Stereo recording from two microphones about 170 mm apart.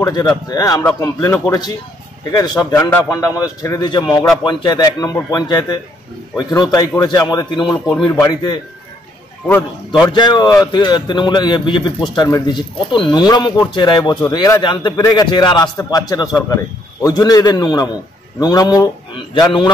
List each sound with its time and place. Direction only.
0.0 s a man's voice: 20° left (ahead or behind)
10.0 s a man's voice: 25° left (ahead or behind)